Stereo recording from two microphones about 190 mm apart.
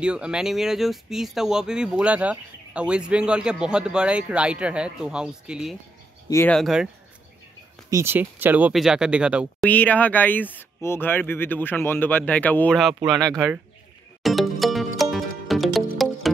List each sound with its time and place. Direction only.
0.0 s speech: 5° right (ahead or behind)
6.2 s speech: 15° left (ahead or behind)
6.5 s speech: centre (ahead or behind)
7.9 s speech: 10° right (ahead or behind)
9.7 s speech: 10° left (ahead or behind)
14.2 s music: centre (ahead or behind)